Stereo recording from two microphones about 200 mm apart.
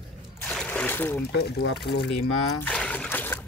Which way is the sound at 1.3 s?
55° left (ahead or behind).